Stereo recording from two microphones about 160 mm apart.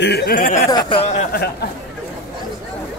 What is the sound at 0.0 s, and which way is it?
Speech, 90° left.